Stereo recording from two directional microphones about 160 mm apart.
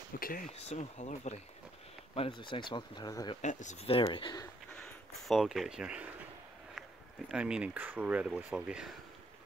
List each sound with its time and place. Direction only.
0.2 s speech: 60° left (ahead or behind)
0.5 s speech: 45° left (ahead or behind)
2.1 s speech: 35° left (ahead or behind)
3.4 s speech: 50° left (ahead or behind)
3.8 s speech: 35° left (ahead or behind)
5.3 s speech: centre (ahead or behind)
7.2 s speech: 5° right (ahead or behind)